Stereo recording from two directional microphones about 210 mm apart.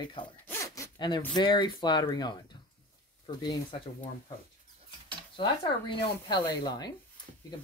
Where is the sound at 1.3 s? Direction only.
20° left (ahead or behind).